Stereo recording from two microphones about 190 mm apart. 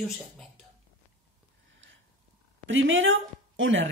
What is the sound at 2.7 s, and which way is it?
A woman's voice, 85° right.